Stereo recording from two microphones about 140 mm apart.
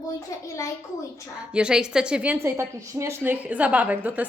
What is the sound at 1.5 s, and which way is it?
A woman's voice, 5° right (ahead or behind).